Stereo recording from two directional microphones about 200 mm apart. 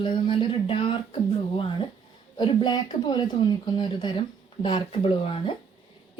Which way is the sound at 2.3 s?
25° left (ahead or behind).